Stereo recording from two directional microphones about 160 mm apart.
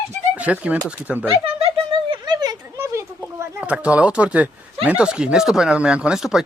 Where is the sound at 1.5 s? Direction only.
35° right (ahead or behind); by 3.1 s 15° right (ahead or behind).